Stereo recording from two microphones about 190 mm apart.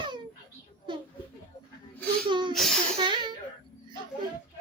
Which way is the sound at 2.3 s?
25° right (ahead or behind).